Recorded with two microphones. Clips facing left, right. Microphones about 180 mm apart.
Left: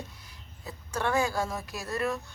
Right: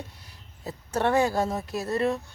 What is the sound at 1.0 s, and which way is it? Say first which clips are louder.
Speech: right 5 dB; 25° right (ahead or behind).